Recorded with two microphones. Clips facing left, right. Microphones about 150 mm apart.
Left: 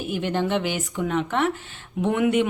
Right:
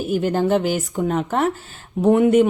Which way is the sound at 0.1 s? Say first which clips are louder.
Right 6 dB; 40° right (ahead or behind).